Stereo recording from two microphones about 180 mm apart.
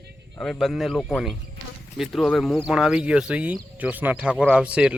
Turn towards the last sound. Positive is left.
turn(degrees=-5)  # may be behind; listen again after turning